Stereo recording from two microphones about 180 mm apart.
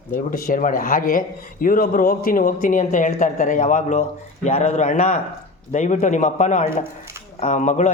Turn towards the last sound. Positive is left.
turn(degrees=40)  # may be behind; listen again after turning